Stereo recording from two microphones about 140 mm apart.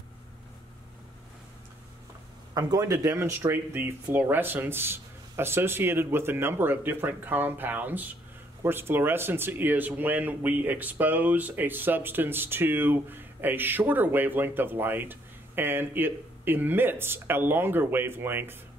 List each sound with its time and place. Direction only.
2.5 s speech: 25° right (ahead or behind)